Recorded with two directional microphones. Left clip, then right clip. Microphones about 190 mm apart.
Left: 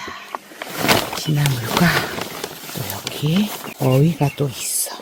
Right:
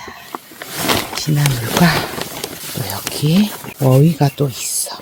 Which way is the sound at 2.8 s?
30° right (ahead or behind).